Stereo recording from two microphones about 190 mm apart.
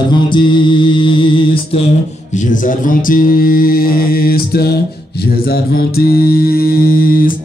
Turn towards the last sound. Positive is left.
turn(degrees=50)  # may be behind; listen again after turning